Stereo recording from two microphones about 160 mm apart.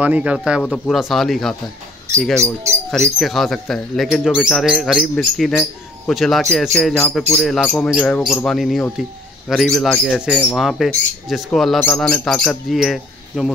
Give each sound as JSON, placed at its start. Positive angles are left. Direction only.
{"t": 0.0, "sound": "speech", "side_deg": -10}
{"t": 2.4, "sound": "speech", "side_deg": -20}
{"t": 2.9, "sound": "speech", "side_deg": 0}